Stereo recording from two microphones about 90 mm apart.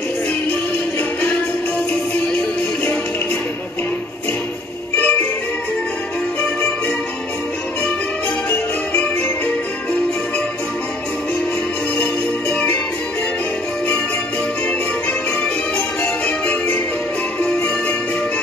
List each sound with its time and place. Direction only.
4.9 s music: 20° left (ahead or behind)
12.0 s music: 10° left (ahead or behind)
16.0 s music: 15° left (ahead or behind)
17.4 s jingle bell: 10° left (ahead or behind)